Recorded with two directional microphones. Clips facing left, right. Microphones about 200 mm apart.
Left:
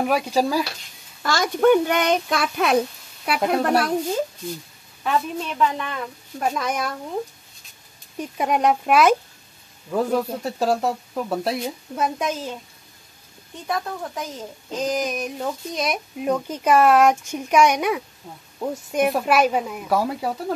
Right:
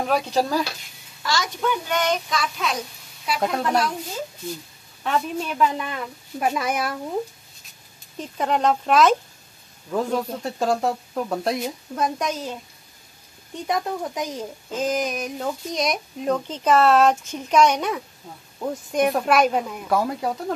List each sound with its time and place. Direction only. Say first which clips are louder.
0.1 s speech: left 1 dB; 10° left (ahead or behind)
1.2 s a child's voice: left 7 dB; 50° left (ahead or behind)
5.0 s speech: left 1 dB; centre (ahead or behind)
8.2 s speech: left 1 dB; 10° left (ahead or behind)
13.7 s speech: right 2 dB; 15° right (ahead or behind)
14.7 s speech: even; centre (ahead or behind)